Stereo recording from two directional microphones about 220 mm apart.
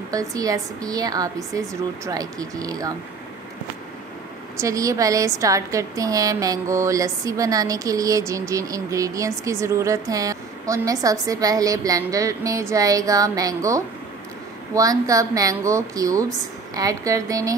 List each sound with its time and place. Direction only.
0.1 s a woman's voice: 15° right (ahead or behind)
4.6 s a woman's voice: 15° right (ahead or behind)